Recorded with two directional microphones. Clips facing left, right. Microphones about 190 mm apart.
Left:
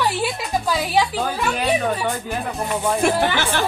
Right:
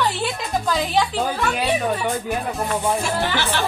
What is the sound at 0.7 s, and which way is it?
Speech, 10° left (ahead or behind).